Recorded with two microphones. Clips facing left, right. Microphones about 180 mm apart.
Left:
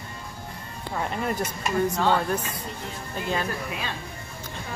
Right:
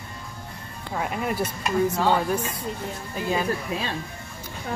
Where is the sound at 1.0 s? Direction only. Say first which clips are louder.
Right 1 dB; 10° right (ahead or behind).